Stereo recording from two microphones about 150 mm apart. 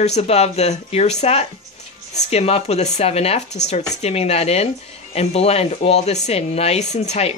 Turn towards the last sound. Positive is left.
turn(degrees=45)  # may be behind; listen again after turning